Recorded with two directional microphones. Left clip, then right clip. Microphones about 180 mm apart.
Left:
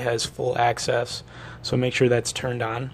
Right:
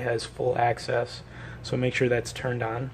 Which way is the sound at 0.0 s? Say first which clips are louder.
Left 2 dB; 35° left (ahead or behind).